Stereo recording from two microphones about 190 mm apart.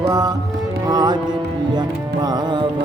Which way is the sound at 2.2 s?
25° right (ahead or behind).